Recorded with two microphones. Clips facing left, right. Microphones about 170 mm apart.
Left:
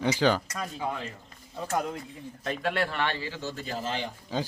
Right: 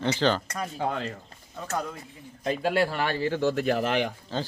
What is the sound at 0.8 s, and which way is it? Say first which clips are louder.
Speech: right 5 dB; 70° right (ahead or behind).